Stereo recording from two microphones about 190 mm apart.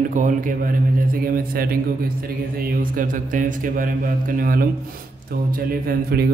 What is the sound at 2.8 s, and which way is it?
A man's voice, 45° right (ahead or behind).